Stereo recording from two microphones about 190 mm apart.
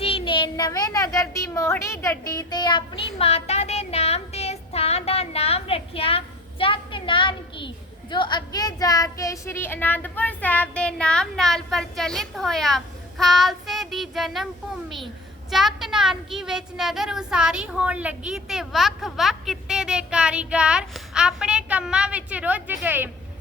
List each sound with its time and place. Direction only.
0.0 s a child's voice: 30° left (ahead or behind); by 14.4 s centre (ahead or behind)
15.4 s a woman's voice: centre (ahead or behind)